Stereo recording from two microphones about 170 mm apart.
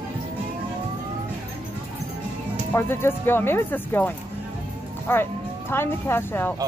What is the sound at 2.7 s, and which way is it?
Speech, 15° left (ahead or behind).